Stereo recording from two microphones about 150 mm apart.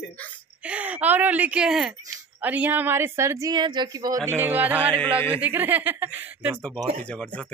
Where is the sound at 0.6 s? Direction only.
10° right (ahead or behind).